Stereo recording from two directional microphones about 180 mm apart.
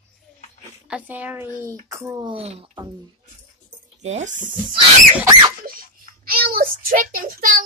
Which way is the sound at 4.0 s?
40° right (ahead or behind).